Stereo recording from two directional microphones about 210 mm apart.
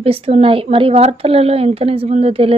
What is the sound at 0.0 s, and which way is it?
A woman's voice, 25° right (ahead or behind).